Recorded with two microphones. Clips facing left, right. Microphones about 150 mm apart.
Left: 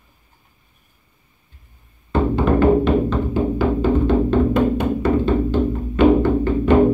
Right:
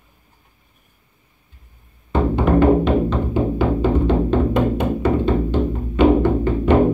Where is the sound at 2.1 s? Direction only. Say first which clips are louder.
Even; 15° right (ahead or behind).